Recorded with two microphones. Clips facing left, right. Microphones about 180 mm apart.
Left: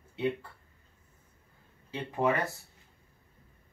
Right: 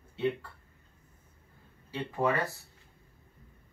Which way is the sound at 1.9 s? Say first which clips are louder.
Left 1 dB; 20° left (ahead or behind).